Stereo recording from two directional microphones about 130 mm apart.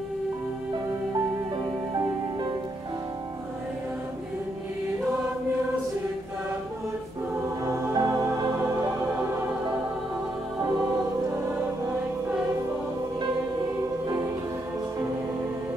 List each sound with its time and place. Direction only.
7.6 s music: 25° right (ahead or behind)